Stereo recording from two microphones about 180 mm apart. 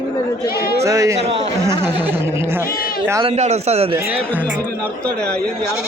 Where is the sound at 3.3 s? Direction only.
35° right (ahead or behind).